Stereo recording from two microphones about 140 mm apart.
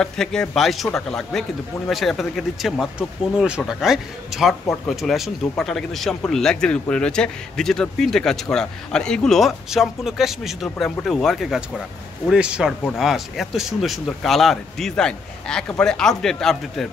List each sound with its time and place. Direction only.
0.0 s speech: 5° left (ahead or behind)